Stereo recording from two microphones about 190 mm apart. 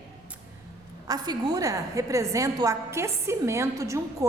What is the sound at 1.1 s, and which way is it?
A woman's voice, 20° right (ahead or behind).